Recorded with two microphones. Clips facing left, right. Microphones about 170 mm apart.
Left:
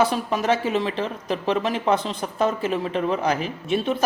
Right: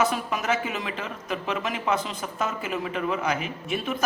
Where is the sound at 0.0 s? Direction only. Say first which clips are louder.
Left 4 dB; 30° left (ahead or behind).